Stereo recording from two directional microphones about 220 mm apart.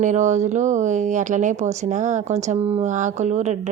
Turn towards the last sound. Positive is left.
turn(degrees=-30)  # may be behind; listen again after turning